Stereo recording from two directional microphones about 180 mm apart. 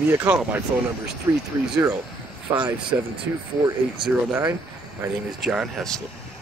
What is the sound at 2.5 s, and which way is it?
Speech, 15° right (ahead or behind).